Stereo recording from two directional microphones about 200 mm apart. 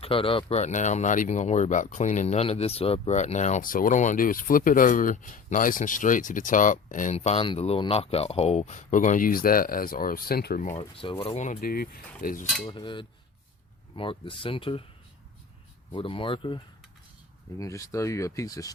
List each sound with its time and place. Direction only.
0.0 s speech: 25° left (ahead or behind)
10.9 s speech: 25° left (ahead or behind); by 12.5 s 45° left (ahead or behind)
12.6 s speech: 25° left (ahead or behind)
15.9 s speech: 25° left (ahead or behind)